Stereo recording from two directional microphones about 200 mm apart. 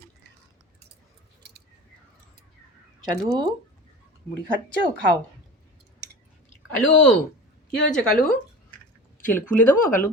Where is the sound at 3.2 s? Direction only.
20° right (ahead or behind).